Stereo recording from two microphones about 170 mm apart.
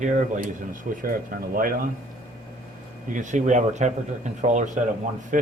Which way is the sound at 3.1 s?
45° right (ahead or behind).